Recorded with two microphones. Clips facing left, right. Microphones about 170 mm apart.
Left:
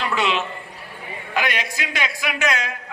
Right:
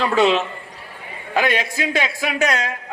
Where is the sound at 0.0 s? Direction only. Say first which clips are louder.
Right 6 dB; 35° right (ahead or behind).